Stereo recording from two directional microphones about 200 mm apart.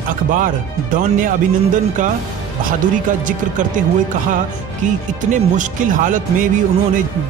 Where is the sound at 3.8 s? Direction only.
40° right (ahead or behind).